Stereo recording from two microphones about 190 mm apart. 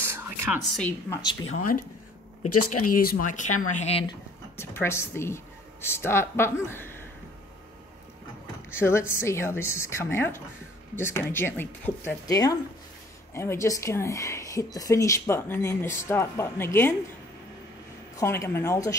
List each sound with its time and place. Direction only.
0.0 s a sound: 15° right (ahead or behind)
0.6 s a woman's voice: 5° left (ahead or behind)
1.5 s speech: 45° left (ahead or behind)
4.6 s speech: 15° left (ahead or behind)
8.6 s speech: 15° left (ahead or behind)
18.1 s speech: 15° left (ahead or behind)